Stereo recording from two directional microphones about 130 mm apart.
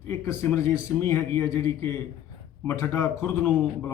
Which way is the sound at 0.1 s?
20° left (ahead or behind).